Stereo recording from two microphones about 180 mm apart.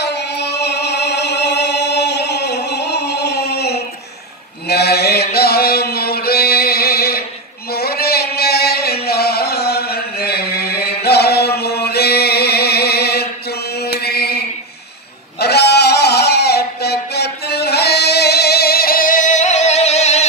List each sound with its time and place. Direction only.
0.0 s music: 70° left (ahead or behind)
4.6 s mantra: 65° left (ahead or behind)
7.7 s a sound: 60° left (ahead or behind)
15.3 s music: 65° left (ahead or behind); by 20.2 s 40° left (ahead or behind)